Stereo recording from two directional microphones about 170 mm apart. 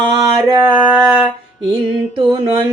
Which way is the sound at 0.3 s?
20° right (ahead or behind).